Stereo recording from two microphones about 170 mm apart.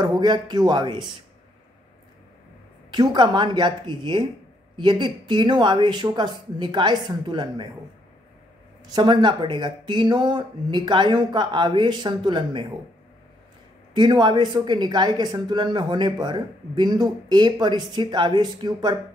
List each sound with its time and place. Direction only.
0.0 s speech: 25° right (ahead or behind)
2.9 s speech: 25° right (ahead or behind)
8.9 s speech: 25° right (ahead or behind)
13.9 s speech: 25° right (ahead or behind)